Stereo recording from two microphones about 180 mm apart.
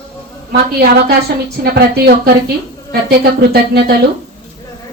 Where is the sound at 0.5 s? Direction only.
60° right (ahead or behind).